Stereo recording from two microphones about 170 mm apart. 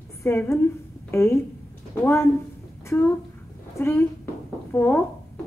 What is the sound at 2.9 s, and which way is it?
A woman's voice, 15° left (ahead or behind).